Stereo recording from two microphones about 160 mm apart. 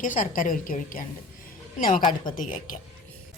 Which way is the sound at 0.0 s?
55° left (ahead or behind).